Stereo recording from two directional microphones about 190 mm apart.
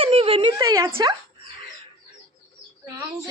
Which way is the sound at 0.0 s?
30° right (ahead or behind).